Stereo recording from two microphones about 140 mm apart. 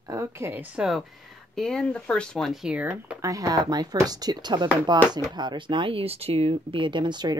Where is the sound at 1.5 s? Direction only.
5° left (ahead or behind).